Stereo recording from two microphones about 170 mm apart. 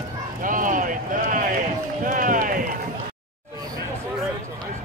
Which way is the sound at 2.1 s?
50° right (ahead or behind).